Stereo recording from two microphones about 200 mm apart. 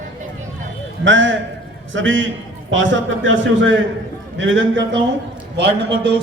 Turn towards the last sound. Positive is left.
turn(degrees=-60)  # may be behind; listen again after turning